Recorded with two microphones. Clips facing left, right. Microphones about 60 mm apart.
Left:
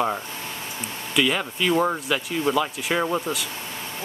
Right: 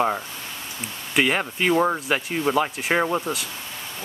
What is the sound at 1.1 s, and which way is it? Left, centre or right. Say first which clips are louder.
Speech: right 1 dB; right.